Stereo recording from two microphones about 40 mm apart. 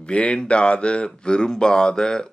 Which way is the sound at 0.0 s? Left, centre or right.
Left.